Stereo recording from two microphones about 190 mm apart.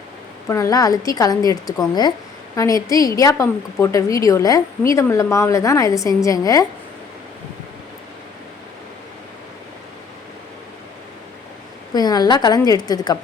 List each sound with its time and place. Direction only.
0.4 s a woman's voice: 15° left (ahead or behind)
11.9 s a woman's voice: 20° left (ahead or behind)